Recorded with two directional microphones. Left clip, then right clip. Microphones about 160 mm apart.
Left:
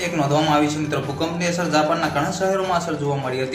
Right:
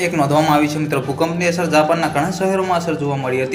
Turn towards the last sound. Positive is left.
turn(degrees=-20)  # may be behind; listen again after turning